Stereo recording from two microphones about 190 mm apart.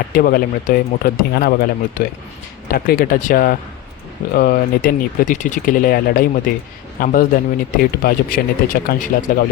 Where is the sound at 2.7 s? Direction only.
50° left (ahead or behind).